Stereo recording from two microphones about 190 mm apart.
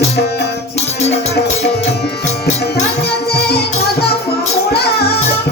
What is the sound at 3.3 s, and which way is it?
Music, 60° left (ahead or behind).